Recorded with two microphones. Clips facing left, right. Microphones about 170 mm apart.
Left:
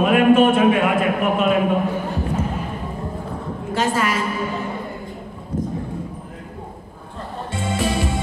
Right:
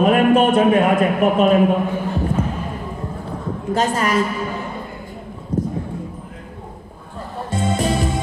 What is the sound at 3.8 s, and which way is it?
Speech, 40° right (ahead or behind).